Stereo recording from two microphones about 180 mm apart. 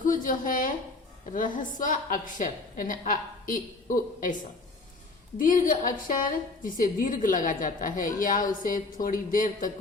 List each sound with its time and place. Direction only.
0.0 s a woman's voice: 50° left (ahead or behind)
5.4 s a woman's voice: 50° left (ahead or behind)